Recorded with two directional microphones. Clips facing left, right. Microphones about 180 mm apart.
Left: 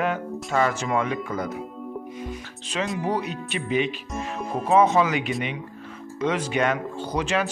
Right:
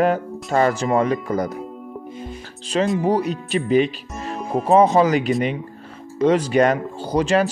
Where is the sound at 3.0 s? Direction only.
35° right (ahead or behind).